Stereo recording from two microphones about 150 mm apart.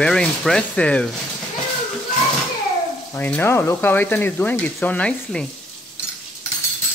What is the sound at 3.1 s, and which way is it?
Speech, 15° left (ahead or behind).